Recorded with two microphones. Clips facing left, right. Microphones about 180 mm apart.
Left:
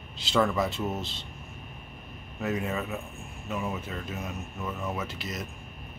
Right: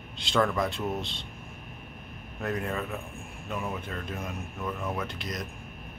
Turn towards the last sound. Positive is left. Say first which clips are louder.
# right 1 dB
turn(degrees=5)  # may be behind; listen again after turning